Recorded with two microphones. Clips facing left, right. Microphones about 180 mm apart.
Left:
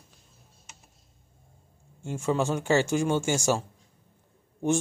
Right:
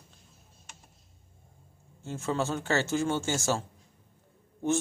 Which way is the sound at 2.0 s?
15° left (ahead or behind).